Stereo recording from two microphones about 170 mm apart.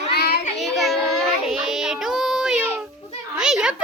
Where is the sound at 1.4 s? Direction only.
Centre (ahead or behind).